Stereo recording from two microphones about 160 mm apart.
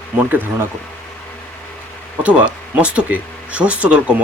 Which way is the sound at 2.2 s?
5° right (ahead or behind).